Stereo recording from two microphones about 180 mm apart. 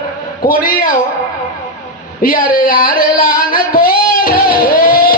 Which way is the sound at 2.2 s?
50° left (ahead or behind).